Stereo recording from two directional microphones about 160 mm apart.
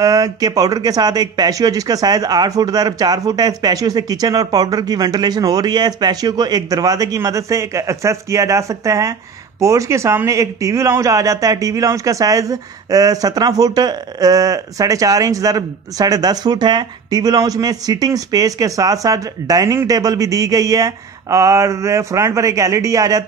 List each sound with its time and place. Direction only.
0.0 s speech: 25° right (ahead or behind)